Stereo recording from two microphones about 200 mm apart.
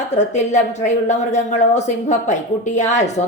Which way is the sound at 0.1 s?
35° left (ahead or behind).